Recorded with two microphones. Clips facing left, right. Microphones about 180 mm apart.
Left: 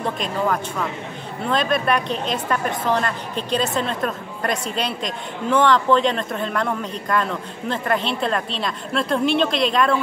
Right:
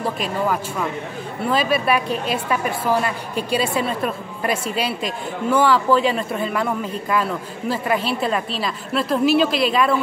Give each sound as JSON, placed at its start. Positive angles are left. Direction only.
{"t": 0.0, "sound": "a woman's voice", "side_deg": -5}